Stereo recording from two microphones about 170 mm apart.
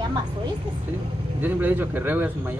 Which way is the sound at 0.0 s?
25° right (ahead or behind).